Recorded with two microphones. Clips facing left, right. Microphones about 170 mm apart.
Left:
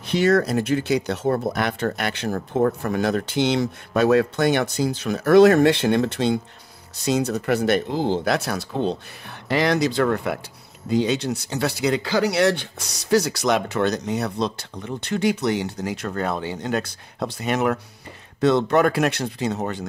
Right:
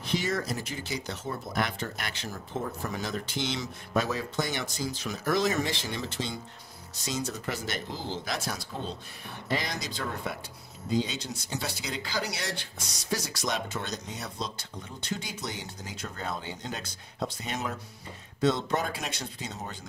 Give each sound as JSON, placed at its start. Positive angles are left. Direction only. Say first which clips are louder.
{"t": 0.0, "sound": "speech", "louder": "left 12 dB", "side_deg": 70}